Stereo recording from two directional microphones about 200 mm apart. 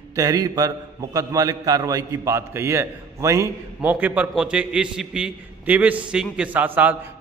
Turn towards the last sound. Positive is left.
turn(degrees=-10)  # may be behind; listen again after turning